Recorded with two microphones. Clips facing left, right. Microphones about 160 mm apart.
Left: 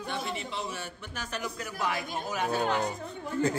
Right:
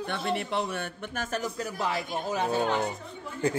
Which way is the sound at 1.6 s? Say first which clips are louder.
Right 2 dB; 30° right (ahead or behind).